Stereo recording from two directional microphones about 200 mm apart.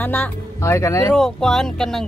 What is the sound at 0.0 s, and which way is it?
Speech, 10° left (ahead or behind).